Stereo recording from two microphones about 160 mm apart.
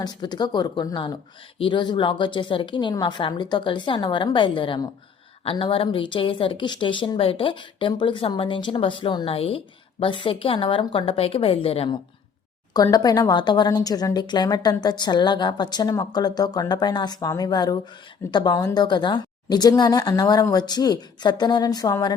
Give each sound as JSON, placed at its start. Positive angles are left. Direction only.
{"t": 0.0, "sound": "speech", "side_deg": 25}
{"t": 12.7, "sound": "speech", "side_deg": 25}